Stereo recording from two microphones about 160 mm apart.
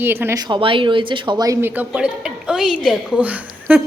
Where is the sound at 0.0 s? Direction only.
15° right (ahead or behind).